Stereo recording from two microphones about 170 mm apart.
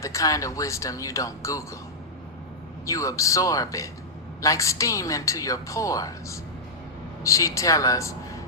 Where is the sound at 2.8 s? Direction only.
20° left (ahead or behind).